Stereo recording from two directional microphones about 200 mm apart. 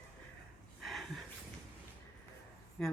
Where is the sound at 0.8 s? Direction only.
Centre (ahead or behind).